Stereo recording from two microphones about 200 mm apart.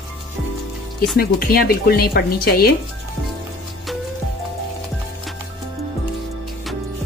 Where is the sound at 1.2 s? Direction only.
50° left (ahead or behind).